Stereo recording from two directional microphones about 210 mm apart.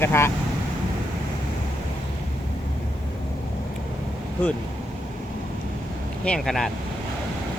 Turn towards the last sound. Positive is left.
turn(degrees=0)  # may be behind; listen again after turning